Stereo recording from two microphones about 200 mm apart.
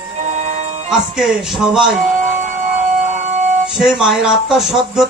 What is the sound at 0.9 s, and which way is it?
Speech, 5° right (ahead or behind).